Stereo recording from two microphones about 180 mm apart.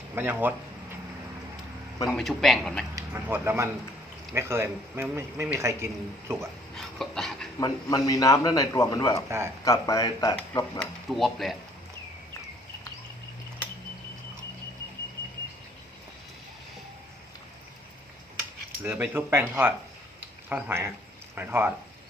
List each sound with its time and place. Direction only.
0.2 s a man's voice: 10° right (ahead or behind)
2.0 s speech: centre (ahead or behind)
2.9 s a man's voice: 10° right (ahead or behind)
6.7 s a sound: 5° left (ahead or behind)
7.6 s a man's voice: 20° left (ahead or behind)
10.8 s speech: centre (ahead or behind)
18.8 s a man's voice: 10° right (ahead or behind)